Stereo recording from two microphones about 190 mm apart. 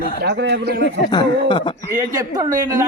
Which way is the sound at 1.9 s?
20° right (ahead or behind).